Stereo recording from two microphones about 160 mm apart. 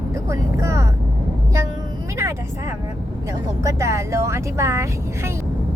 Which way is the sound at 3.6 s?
20° right (ahead or behind).